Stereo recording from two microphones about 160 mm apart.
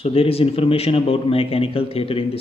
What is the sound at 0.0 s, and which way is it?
A man's voice, 35° left (ahead or behind).